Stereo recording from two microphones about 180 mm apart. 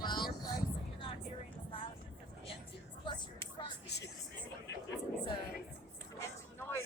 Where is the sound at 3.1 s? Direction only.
25° left (ahead or behind).